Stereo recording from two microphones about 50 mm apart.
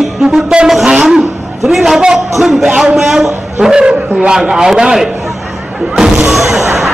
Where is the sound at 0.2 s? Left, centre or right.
Centre.